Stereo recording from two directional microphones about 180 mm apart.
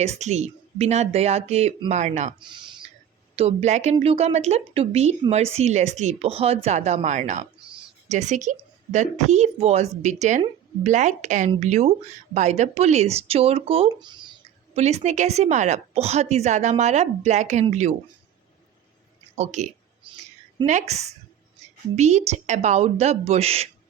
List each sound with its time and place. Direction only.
0.0 s a woman's voice: 40° right (ahead or behind)
2.4 s speech: 25° right (ahead or behind)
3.3 s a woman's voice: 35° right (ahead or behind)
19.4 s a woman's voice: 40° right (ahead or behind)